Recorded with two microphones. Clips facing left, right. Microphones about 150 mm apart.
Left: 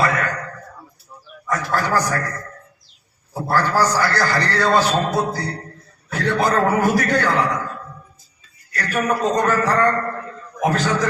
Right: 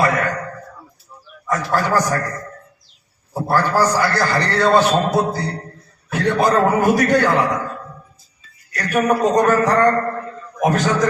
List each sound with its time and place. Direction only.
0.0 s a sound: 20° right (ahead or behind)
1.5 s a man's voice: 20° right (ahead or behind)
3.4 s a man's voice: 20° right (ahead or behind)
9.0 s a man's voice: 20° right (ahead or behind)